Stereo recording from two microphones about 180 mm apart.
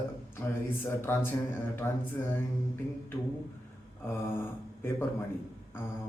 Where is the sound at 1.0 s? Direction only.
15° left (ahead or behind).